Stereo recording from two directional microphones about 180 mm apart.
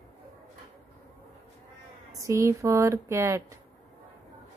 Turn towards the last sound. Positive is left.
turn(degrees=-15)  # may be behind; listen again after turning